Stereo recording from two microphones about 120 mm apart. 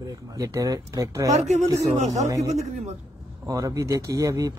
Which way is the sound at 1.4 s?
70° right (ahead or behind).